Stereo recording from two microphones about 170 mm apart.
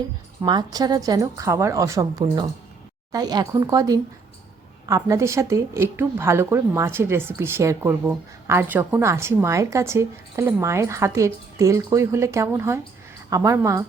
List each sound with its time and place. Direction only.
0.4 s a woman's voice: 25° right (ahead or behind)